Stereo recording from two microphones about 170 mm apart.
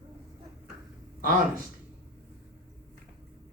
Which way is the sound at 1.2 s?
55° right (ahead or behind).